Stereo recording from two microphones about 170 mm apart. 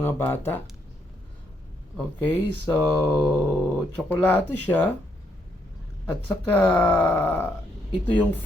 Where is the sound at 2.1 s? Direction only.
10° left (ahead or behind).